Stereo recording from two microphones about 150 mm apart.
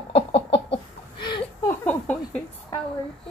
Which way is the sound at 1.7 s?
15° left (ahead or behind).